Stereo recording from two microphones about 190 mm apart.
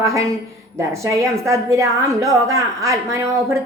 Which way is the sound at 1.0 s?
15° right (ahead or behind).